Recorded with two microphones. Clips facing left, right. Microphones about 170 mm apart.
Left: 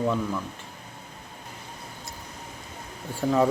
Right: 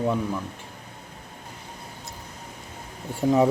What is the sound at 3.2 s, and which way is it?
Speech, 20° right (ahead or behind).